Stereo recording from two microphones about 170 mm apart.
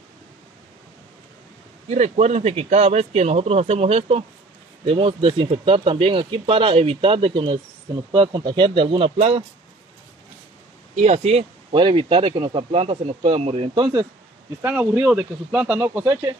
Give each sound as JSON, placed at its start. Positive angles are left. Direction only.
{"t": 1.9, "sound": "speech", "side_deg": -45}
{"t": 11.0, "sound": "speech", "side_deg": -40}
{"t": 14.6, "sound": "speech", "side_deg": -10}